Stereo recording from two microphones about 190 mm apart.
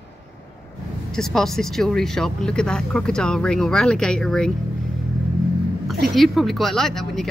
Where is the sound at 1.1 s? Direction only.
Centre (ahead or behind).